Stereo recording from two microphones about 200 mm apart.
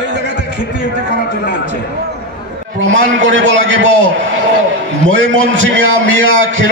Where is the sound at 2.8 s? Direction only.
70° right (ahead or behind).